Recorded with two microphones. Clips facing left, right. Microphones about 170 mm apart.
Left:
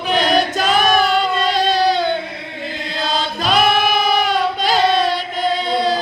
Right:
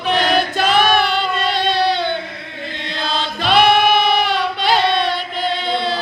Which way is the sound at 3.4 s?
45° left (ahead or behind).